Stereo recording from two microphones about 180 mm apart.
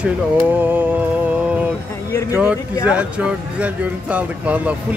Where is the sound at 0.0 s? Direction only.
10° right (ahead or behind).